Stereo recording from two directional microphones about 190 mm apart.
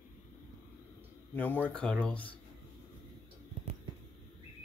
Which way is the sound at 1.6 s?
5° left (ahead or behind).